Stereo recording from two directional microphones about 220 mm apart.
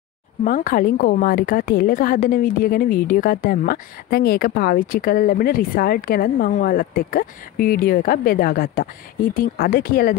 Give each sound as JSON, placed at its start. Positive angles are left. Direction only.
{"t": 0.4, "sound": "a woman's voice", "side_deg": 35}